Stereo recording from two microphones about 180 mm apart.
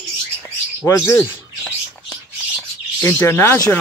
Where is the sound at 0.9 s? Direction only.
15° left (ahead or behind).